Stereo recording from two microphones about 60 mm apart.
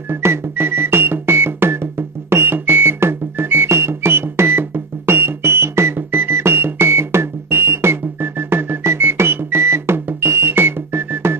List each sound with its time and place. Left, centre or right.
0.1 s music: right